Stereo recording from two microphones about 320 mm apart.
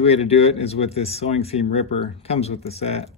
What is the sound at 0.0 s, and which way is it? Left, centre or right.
Speech, centre.